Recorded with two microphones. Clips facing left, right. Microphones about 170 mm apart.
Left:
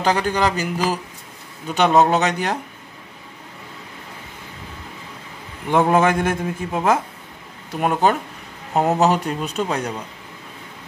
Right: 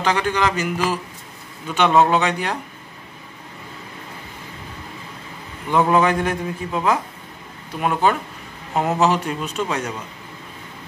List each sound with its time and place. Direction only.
0.0 s a man's voice: 40° left (ahead or behind)
5.7 s a man's voice: 50° left (ahead or behind)